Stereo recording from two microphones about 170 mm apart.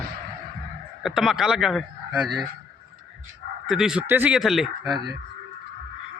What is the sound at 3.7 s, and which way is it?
Speech, 5° right (ahead or behind).